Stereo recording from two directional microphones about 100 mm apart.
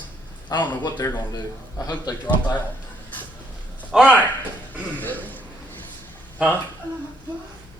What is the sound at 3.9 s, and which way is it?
Speech, 10° right (ahead or behind).